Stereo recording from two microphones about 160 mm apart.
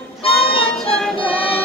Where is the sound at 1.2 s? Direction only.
35° left (ahead or behind).